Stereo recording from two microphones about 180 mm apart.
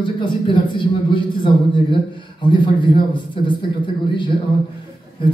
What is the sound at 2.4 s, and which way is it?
Speech, 25° left (ahead or behind).